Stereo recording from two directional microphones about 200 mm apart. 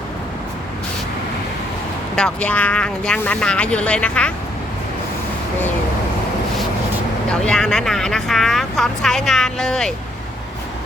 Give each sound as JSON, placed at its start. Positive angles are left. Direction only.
{"t": 2.1, "sound": "speech", "side_deg": 5}
{"t": 7.4, "sound": "speech", "side_deg": 5}